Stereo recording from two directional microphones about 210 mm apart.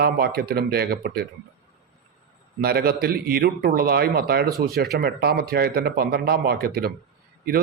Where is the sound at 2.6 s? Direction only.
45° right (ahead or behind).